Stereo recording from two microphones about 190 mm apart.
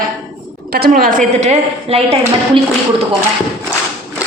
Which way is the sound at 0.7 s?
55° right (ahead or behind).